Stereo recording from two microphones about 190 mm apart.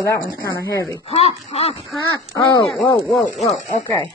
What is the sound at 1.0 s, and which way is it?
Speech, 30° left (ahead or behind).